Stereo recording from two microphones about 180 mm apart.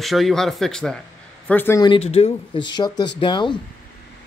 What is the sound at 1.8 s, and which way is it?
Speech, 30° left (ahead or behind).